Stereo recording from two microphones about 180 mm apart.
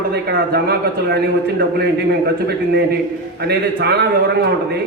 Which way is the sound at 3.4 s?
65° right (ahead or behind).